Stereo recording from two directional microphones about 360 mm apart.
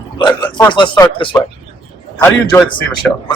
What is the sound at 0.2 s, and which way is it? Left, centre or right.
A man's voice, centre.